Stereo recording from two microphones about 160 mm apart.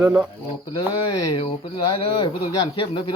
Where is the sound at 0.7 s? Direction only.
30° left (ahead or behind).